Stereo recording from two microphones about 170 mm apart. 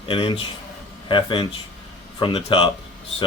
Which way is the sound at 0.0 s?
30° left (ahead or behind).